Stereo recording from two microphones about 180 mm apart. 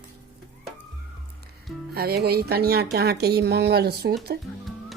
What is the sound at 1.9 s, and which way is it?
Speech, 60° right (ahead or behind).